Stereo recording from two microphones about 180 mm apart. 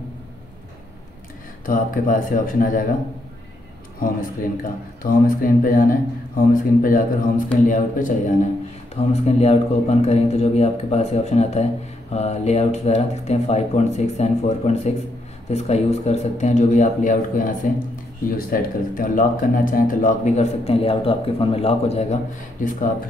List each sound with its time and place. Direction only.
1.7 s speech: 50° left (ahead or behind)
4.0 s speech: 50° left (ahead or behind)
8.9 s speech: 35° left (ahead or behind)